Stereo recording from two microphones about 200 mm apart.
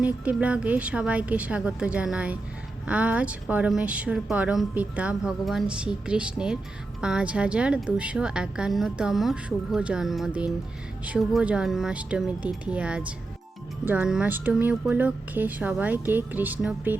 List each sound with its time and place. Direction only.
0.0 s a woman's voice: 5° right (ahead or behind)